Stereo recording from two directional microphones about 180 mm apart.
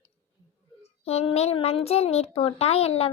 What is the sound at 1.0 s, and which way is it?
Child singing, 35° left (ahead or behind).